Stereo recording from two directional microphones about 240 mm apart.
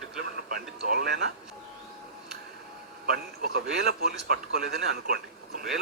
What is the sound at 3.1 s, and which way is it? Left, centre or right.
A man's voice, right.